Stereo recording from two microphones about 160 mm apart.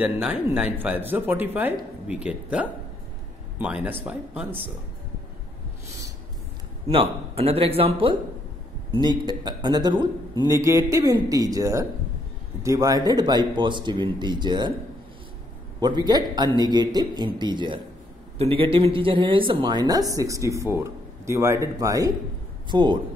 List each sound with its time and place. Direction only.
0.0 s speech: 10° right (ahead or behind)
6.9 s a man's voice: 35° right (ahead or behind)
15.8 s speech: 25° right (ahead or behind)